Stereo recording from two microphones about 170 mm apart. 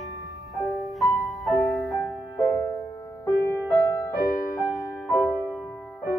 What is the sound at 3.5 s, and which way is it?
Music, 15° left (ahead or behind).